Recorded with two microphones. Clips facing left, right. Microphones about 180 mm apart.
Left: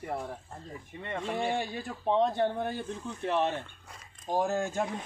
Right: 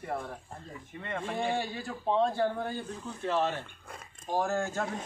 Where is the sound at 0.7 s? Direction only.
15° left (ahead or behind).